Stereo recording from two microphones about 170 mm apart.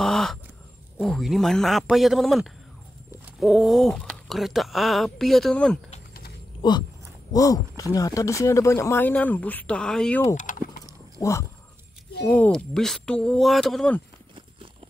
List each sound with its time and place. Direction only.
0.0 s a sound: 5° left (ahead or behind)
0.9 s speech: centre (ahead or behind)
6.6 s speech: 25° left (ahead or behind); by 10.2 s 5° left (ahead or behind)
10.2 s speech: 50° left (ahead or behind)
11.1 s speech: 20° left (ahead or behind)
12.3 s speech: 5° left (ahead or behind)